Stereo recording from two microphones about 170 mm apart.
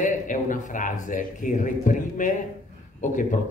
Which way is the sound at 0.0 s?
50° left (ahead or behind).